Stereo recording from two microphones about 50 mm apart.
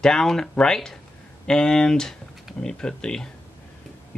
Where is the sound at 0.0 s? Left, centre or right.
Centre.